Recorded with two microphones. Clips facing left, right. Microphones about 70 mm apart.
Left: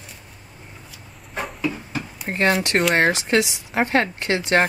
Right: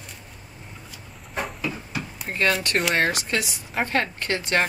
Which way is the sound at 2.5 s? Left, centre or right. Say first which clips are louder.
Left 4 dB; centre.